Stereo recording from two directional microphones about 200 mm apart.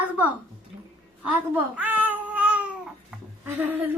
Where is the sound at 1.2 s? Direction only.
5° right (ahead or behind).